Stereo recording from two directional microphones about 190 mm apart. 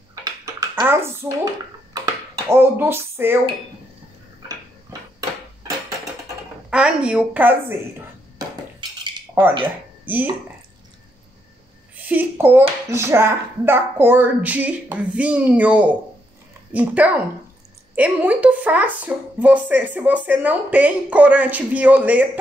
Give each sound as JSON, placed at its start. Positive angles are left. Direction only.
{"t": 0.2, "sound": "a sound", "side_deg": -20}
{"t": 0.8, "sound": "speech", "side_deg": -15}
{"t": 6.7, "sound": "a woman's voice", "side_deg": -5}
{"t": 9.4, "sound": "speech", "side_deg": -10}
{"t": 12.1, "sound": "speech", "side_deg": -10}